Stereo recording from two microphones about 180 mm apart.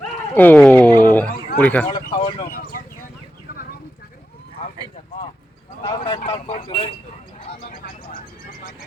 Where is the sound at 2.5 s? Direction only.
50° left (ahead or behind).